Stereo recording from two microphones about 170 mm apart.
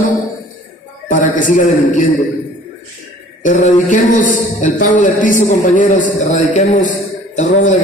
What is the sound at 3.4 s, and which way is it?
Speech, 50° left (ahead or behind).